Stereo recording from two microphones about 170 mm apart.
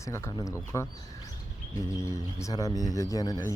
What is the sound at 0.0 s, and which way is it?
Speech, 15° left (ahead or behind).